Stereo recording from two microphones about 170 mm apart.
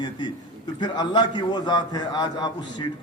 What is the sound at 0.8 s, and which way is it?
A man's voice, 25° left (ahead or behind).